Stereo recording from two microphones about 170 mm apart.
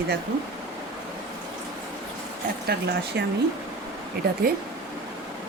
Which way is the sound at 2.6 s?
75° right (ahead or behind).